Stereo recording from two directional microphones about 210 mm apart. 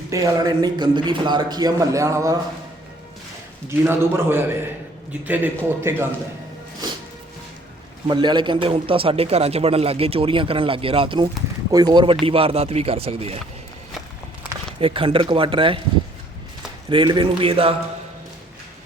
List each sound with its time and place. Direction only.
0.1 s a man's voice: 15° right (ahead or behind)
3.7 s a man's voice: 10° right (ahead or behind)
8.0 s speech: 20° right (ahead or behind)
14.8 s speech: 25° right (ahead or behind)
16.9 s speech: 20° right (ahead or behind)